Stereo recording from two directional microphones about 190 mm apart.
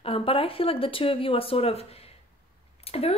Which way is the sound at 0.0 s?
30° left (ahead or behind).